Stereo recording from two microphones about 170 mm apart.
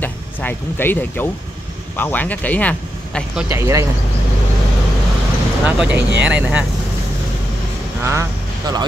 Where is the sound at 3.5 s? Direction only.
20° right (ahead or behind).